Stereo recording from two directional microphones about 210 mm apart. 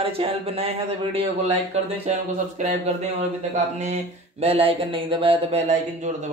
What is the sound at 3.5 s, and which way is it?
Speech, 35° right (ahead or behind).